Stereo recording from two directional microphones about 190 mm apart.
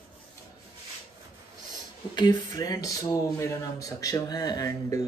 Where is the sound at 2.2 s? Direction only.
20° left (ahead or behind).